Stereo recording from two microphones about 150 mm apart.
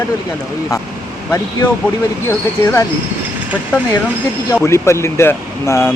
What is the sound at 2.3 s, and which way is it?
Speech, 20° left (ahead or behind).